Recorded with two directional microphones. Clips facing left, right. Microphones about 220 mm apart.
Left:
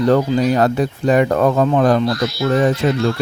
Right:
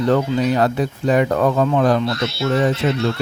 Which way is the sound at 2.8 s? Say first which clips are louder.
Left 2 dB; 45° left (ahead or behind).